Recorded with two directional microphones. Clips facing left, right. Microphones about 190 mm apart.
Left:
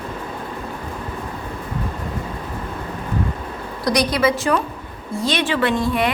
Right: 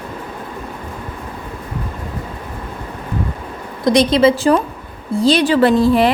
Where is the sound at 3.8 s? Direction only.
25° right (ahead or behind).